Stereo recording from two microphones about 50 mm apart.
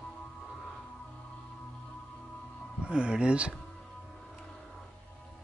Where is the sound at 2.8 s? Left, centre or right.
Centre.